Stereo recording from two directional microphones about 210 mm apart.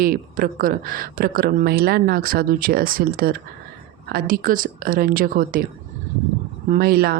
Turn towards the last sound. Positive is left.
turn(degrees=-45)  # may be behind; listen again after turning